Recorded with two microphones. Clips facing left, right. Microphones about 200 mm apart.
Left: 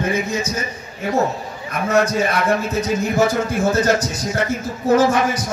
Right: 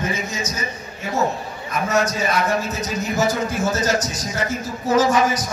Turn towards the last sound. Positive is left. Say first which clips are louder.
# left 2 dB
turn(degrees=55)  # may be behind; listen again after turning